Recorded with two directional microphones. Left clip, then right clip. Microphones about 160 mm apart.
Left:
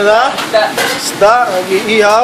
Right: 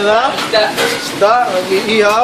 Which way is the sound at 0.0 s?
5° left (ahead or behind).